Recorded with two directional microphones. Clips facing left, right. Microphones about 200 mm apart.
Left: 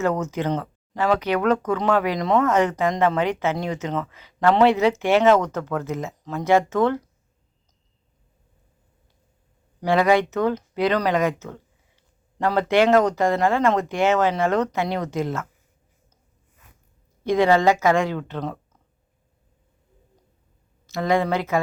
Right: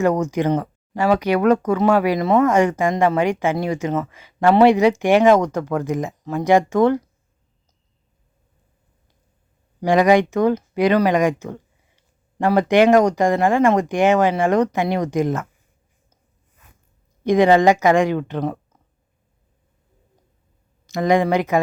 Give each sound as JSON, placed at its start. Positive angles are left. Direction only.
{"t": 0.0, "sound": "speech", "side_deg": -15}
{"t": 9.8, "sound": "speech", "side_deg": -15}
{"t": 17.2, "sound": "speech", "side_deg": -15}
{"t": 20.8, "sound": "speech", "side_deg": -15}